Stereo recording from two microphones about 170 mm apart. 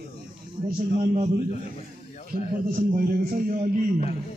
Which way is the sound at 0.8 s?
45° right (ahead or behind).